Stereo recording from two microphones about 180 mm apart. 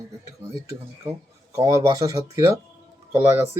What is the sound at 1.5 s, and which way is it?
A man's voice, 20° right (ahead or behind).